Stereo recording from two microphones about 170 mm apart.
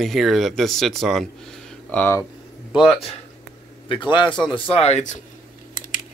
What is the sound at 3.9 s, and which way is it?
Speech, 25° left (ahead or behind).